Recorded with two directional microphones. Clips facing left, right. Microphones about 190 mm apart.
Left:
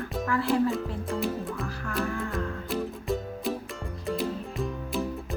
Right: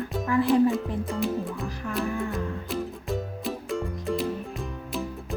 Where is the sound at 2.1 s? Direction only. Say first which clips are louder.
Right 3 dB; 15° right (ahead or behind).